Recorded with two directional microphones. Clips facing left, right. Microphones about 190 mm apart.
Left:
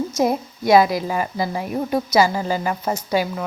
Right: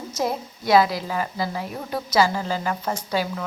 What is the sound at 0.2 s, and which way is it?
A woman's voice, 15° left (ahead or behind).